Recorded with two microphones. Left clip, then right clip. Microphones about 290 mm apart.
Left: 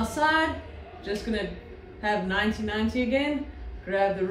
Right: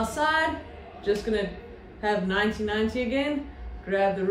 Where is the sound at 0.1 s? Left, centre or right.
Centre.